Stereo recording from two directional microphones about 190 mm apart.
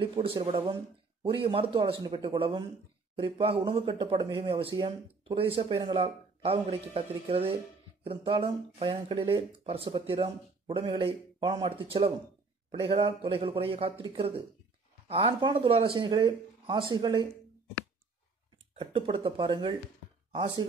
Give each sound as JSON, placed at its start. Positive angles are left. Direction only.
{"t": 0.0, "sound": "speech", "side_deg": -30}
{"t": 18.8, "sound": "speech", "side_deg": -25}